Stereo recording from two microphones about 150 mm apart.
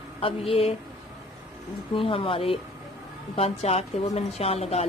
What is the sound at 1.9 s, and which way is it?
A woman's voice, 40° left (ahead or behind).